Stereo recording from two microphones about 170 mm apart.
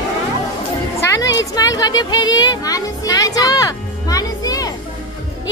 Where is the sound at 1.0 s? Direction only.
20° left (ahead or behind).